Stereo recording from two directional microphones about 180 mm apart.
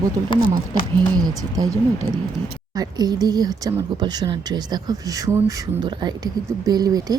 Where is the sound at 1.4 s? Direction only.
20° right (ahead or behind).